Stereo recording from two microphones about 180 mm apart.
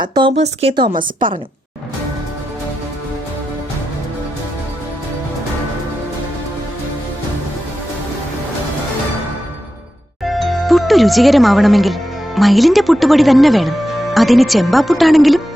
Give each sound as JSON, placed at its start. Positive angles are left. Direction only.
{"t": 0.0, "sound": "speech", "side_deg": -25}
{"t": 10.2, "sound": "speech", "side_deg": 0}